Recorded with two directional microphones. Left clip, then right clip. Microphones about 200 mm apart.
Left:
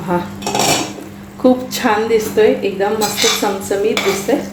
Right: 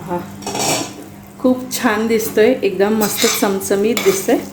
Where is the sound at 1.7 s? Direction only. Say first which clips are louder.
Left 2 dB; 10° right (ahead or behind).